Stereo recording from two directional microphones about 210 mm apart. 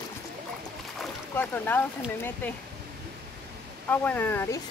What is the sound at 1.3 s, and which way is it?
Speech, 10° left (ahead or behind).